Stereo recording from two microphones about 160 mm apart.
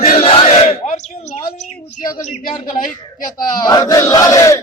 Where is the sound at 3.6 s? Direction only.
25° left (ahead or behind).